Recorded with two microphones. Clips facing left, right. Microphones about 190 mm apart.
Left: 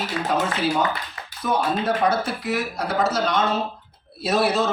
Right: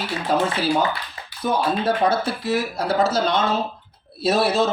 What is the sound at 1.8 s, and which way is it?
Speech, 30° right (ahead or behind).